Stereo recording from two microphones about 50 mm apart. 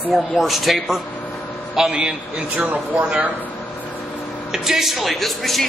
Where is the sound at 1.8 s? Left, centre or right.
Centre.